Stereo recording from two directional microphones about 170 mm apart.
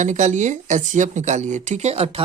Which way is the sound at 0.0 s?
45° right (ahead or behind).